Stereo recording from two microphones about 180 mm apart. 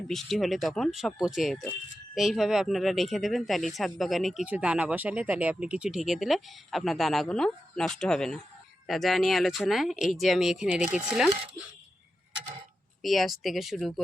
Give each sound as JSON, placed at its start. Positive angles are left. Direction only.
{"t": 0.1, "sound": "speech", "side_deg": 0}
{"t": 13.0, "sound": "speech", "side_deg": 0}